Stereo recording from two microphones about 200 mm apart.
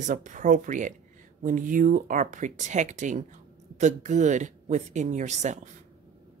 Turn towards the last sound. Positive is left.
turn(degrees=-35)  # may be behind; listen again after turning